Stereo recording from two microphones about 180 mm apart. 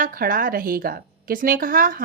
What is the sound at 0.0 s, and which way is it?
A woman's voice, 50° right (ahead or behind).